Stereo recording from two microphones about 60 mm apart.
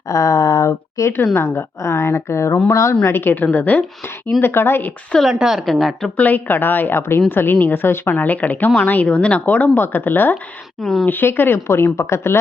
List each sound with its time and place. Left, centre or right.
0.1 s speech: left
1.1 s a woman's voice: left
2.6 s a woman's voice: left
2.9 s speech: left
3.4 s speech: left
4.4 s speech: left
5.3 s a woman's voice: centre
6.1 s speech: left
9.7 s speech: left
10.8 s speech: centre
11.1 s a woman's voice: left